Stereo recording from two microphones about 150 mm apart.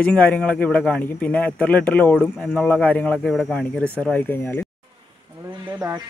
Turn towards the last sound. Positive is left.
turn(degrees=-20)  # may be behind; listen again after turning